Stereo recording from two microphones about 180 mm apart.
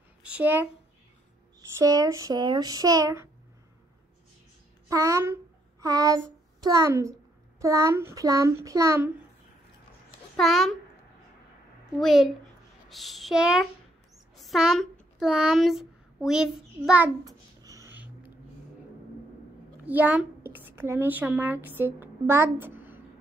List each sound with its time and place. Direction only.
0.2 s a child's voice: 10° right (ahead or behind)
1.8 s speech: 20° right (ahead or behind)
4.8 s a child's voice: 20° right (ahead or behind)
10.3 s a child's voice: centre (ahead or behind)
12.0 s a child's voice: centre (ahead or behind)
17.2 s a sound: 20° right (ahead or behind)
19.9 s a woman's voice: 10° right (ahead or behind)